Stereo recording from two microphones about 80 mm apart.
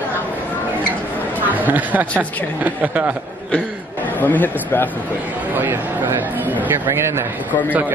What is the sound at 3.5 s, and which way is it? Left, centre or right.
A man's voice, left.